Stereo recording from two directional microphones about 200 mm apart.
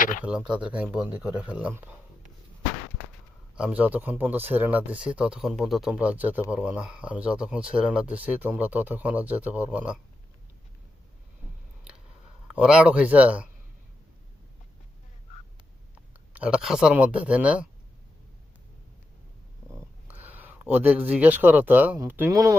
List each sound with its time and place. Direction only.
0.0 s a sound: 40° left (ahead or behind)
0.3 s speech: 5° right (ahead or behind)
3.5 s speech: 5° right (ahead or behind)
12.5 s a man's voice: 5° right (ahead or behind)
16.3 s a man's voice: 5° right (ahead or behind)
20.1 s speech: 10° right (ahead or behind)